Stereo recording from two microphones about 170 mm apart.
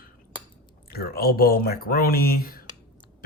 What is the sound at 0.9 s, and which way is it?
A man's voice, 65° left (ahead or behind).